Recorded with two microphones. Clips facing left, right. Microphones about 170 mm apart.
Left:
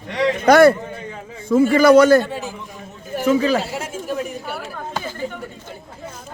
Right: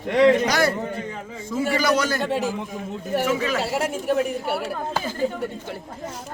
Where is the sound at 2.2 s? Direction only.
80° right.